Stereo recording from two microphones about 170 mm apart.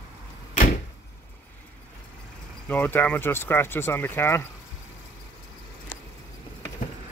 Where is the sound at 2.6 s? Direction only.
10° left (ahead or behind).